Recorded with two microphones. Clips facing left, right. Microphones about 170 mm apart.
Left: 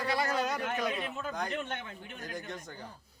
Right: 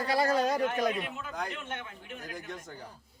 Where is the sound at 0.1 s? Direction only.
35° right (ahead or behind).